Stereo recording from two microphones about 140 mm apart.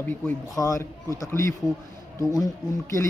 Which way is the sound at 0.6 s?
20° left (ahead or behind).